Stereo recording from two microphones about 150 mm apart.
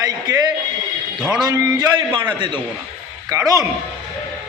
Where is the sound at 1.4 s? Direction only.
20° right (ahead or behind).